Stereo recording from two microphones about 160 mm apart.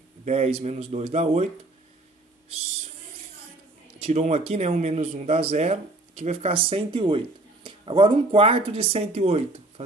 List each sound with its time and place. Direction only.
0.2 s speech: 40° right (ahead or behind)
4.0 s speech: 45° right (ahead or behind)